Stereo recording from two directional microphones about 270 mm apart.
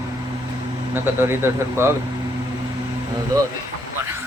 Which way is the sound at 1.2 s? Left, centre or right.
Centre.